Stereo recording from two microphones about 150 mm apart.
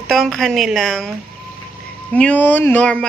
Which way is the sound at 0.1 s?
Centre (ahead or behind).